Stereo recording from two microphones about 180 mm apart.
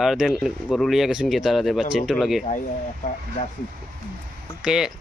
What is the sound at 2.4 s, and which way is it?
Speech, 45° left (ahead or behind).